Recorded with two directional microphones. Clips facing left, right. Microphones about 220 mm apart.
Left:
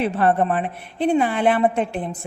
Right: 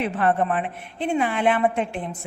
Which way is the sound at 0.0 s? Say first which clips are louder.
Left 3 dB; 40° left (ahead or behind).